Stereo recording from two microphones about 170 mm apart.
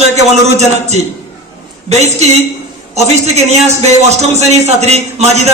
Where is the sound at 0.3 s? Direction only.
40° right (ahead or behind).